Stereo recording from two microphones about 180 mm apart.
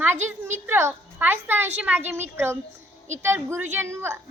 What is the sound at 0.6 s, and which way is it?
A woman's voice, 15° right (ahead or behind).